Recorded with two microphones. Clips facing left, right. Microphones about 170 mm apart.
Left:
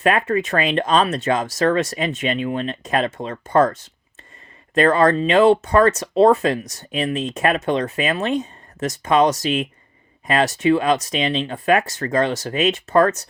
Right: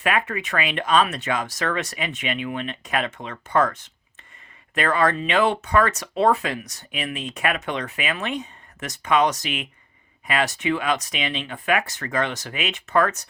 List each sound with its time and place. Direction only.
0.0 s speech: 40° left (ahead or behind)
4.9 s speech: 35° left (ahead or behind)